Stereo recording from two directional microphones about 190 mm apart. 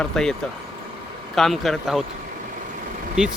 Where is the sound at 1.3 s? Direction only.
Centre (ahead or behind).